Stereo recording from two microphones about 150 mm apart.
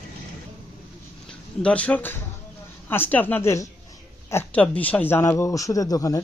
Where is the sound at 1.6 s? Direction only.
10° left (ahead or behind); by 6.2 s 25° left (ahead or behind).